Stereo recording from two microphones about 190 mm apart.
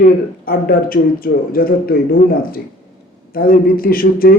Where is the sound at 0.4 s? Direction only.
50° left (ahead or behind).